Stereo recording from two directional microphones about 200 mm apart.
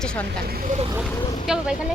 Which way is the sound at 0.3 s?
50° right (ahead or behind).